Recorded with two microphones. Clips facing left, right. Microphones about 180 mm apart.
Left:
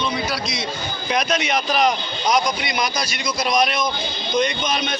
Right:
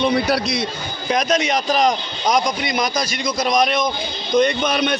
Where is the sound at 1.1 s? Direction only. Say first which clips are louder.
Right 3 dB; 40° right (ahead or behind).